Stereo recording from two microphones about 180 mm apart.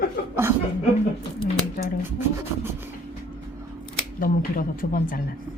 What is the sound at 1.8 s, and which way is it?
Speech, 50° left (ahead or behind).